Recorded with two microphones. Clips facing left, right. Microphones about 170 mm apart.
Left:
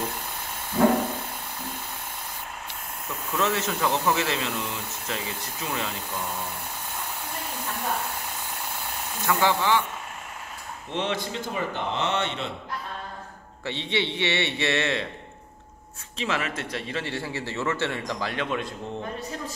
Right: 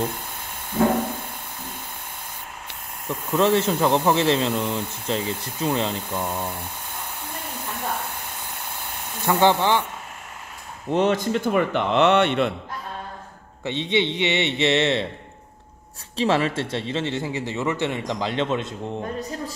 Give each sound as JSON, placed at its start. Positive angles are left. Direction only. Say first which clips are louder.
{"t": 3.1, "sound": "speech", "louder": "right 7 dB", "side_deg": -30}
{"t": 9.2, "sound": "speech", "louder": "right 5 dB", "side_deg": -30}
{"t": 10.9, "sound": "speech", "louder": "right 9 dB", "side_deg": -45}
{"t": 11.5, "sound": "speech", "louder": "right 8 dB", "side_deg": -70}
{"t": 13.7, "sound": "speech", "louder": "right 5 dB", "side_deg": -20}
{"t": 16.2, "sound": "speech", "louder": "right 8 dB", "side_deg": -30}